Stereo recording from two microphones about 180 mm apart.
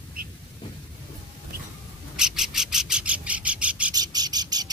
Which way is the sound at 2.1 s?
5° right (ahead or behind).